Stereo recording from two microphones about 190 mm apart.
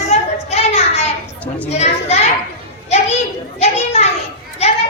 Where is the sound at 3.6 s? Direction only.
35° left (ahead or behind).